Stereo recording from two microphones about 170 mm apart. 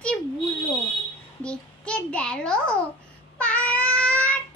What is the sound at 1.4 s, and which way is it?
A child's voice, 5° left (ahead or behind).